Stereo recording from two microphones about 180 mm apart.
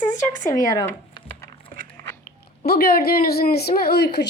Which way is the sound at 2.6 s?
60° left (ahead or behind).